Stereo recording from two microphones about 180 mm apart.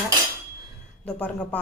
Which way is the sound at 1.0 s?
10° left (ahead or behind).